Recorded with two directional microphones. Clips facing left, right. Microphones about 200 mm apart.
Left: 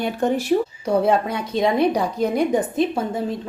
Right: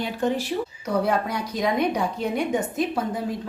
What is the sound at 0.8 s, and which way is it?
A woman's voice, 25° left (ahead or behind).